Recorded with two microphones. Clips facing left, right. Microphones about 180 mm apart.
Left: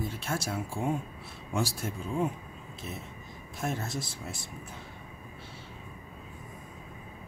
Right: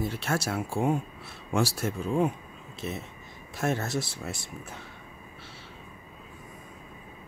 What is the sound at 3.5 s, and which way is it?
Speech, 75° right (ahead or behind).